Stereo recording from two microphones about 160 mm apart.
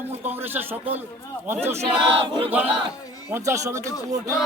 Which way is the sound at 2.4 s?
10° right (ahead or behind).